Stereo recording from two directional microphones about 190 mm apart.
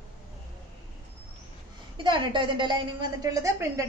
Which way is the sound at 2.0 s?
25° right (ahead or behind).